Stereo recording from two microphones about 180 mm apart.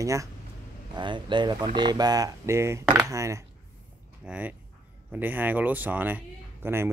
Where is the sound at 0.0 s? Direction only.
15° right (ahead or behind).